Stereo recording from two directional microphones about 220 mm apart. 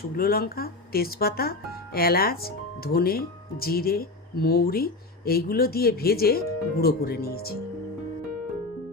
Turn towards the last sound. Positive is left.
turn(degrees=45)  # may be behind; listen again after turning